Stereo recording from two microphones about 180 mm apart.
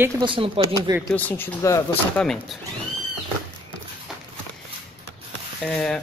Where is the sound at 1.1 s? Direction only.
10° left (ahead or behind).